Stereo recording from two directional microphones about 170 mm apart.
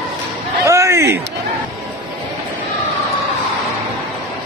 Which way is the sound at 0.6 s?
15° right (ahead or behind).